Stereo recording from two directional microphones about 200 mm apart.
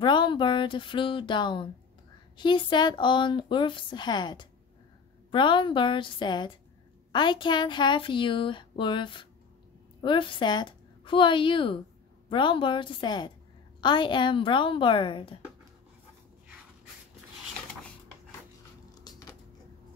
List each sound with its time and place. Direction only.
0.0 s speech: 25° left (ahead or behind)
18.9 s biting: 20° left (ahead or behind)